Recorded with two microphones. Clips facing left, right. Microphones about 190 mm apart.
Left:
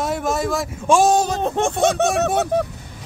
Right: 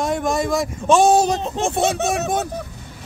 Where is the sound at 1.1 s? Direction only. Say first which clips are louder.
Right 2 dB; 10° right (ahead or behind).